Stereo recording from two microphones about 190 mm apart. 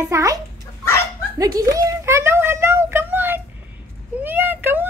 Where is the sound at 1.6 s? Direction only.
15° right (ahead or behind).